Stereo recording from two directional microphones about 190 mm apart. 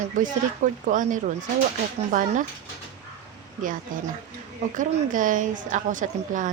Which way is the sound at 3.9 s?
45° right (ahead or behind).